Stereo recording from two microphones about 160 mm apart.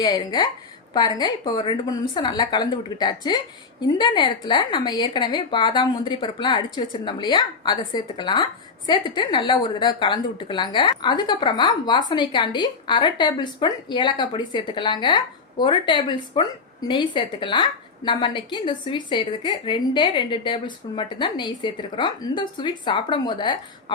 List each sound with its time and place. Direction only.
0.0 s a woman's voice: 25° left (ahead or behind)